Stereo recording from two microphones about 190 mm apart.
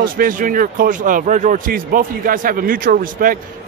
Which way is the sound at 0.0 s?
45° right (ahead or behind).